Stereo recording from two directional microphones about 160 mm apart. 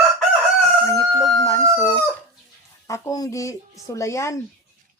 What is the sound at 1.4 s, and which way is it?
Speech, 15° left (ahead or behind).